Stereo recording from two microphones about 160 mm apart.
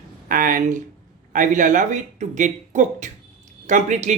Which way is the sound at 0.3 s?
60° right (ahead or behind).